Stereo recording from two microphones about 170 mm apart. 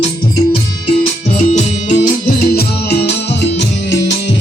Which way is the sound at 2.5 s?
70° left (ahead or behind).